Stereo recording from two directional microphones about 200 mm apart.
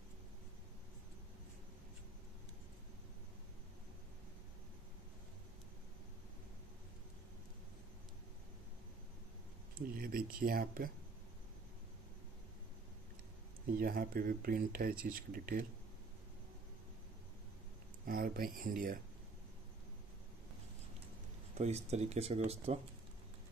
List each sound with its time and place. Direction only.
9.8 s speech: 45° right (ahead or behind)
13.7 s speech: 45° right (ahead or behind)
18.0 s speech: 45° right (ahead or behind)
21.5 s speech: 35° right (ahead or behind)